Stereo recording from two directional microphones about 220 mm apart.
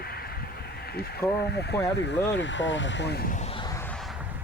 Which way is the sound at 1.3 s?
50° left (ahead or behind).